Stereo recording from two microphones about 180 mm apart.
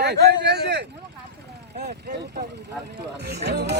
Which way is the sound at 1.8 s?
60° right (ahead or behind).